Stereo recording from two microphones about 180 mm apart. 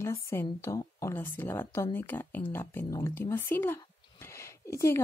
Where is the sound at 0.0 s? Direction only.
15° left (ahead or behind).